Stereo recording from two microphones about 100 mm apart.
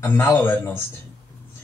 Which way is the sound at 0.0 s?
25° left (ahead or behind).